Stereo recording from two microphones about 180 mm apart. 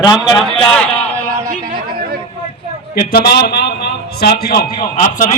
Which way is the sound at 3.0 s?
55° left (ahead or behind).